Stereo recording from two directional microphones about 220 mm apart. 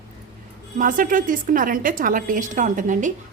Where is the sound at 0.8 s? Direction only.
40° right (ahead or behind).